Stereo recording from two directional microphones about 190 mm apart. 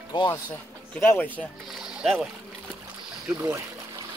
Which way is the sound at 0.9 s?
10° left (ahead or behind).